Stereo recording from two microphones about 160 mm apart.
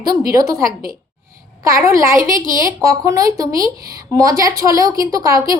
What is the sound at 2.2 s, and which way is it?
Speech, 55° right (ahead or behind).